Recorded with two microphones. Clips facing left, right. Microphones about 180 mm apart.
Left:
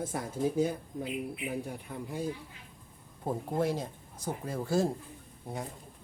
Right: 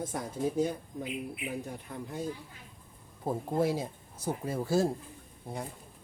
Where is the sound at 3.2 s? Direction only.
10° right (ahead or behind).